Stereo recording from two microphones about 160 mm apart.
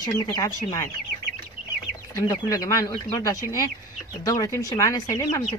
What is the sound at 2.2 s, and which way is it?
Speech, 20° left (ahead or behind).